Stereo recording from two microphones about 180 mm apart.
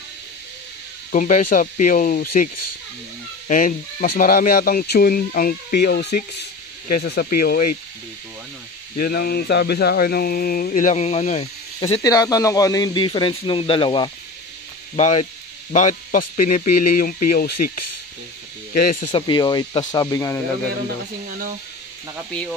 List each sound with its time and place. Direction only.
1.1 s speech: 45° left (ahead or behind)
8.9 s speech: 55° left (ahead or behind); by 12.0 s 40° left (ahead or behind)
12.0 s speech: 20° left (ahead or behind)
15.0 s speech: 40° left (ahead or behind)
19.1 s speech: 25° left (ahead or behind)
21.3 s speech: 50° right (ahead or behind)